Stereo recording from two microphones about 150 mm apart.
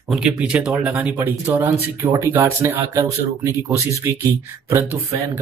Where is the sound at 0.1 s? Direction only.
5° right (ahead or behind).